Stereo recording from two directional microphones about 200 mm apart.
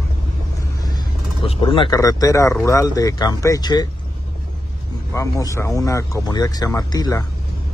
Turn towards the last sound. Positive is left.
turn(degrees=15)  # may be behind; listen again after turning